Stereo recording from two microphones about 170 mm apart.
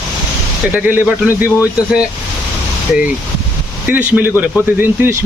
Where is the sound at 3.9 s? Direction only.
10° right (ahead or behind).